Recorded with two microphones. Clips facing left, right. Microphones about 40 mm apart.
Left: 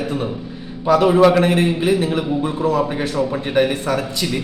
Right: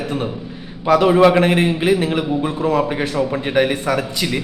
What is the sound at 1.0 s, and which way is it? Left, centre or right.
A man's voice, centre.